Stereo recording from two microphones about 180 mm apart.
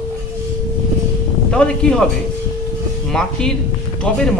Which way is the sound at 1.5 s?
5° left (ahead or behind).